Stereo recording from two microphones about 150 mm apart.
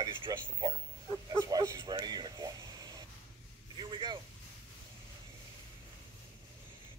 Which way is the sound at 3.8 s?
30° right (ahead or behind).